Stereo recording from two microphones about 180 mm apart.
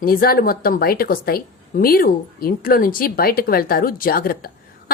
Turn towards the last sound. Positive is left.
turn(degrees=55)  # may be behind; listen again after turning